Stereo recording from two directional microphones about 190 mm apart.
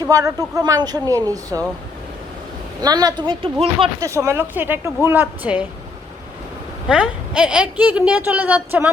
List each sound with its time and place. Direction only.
0.0 s a woman's voice: 15° right (ahead or behind)
2.8 s a woman's voice: 20° right (ahead or behind)
4.0 s a woman's voice: 15° right (ahead or behind)
6.8 s a woman's voice: 5° right (ahead or behind)